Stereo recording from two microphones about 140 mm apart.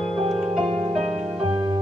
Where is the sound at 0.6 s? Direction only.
45° right (ahead or behind).